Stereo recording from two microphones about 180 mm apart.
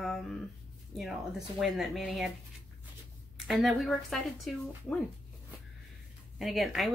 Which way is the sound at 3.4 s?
Centre (ahead or behind).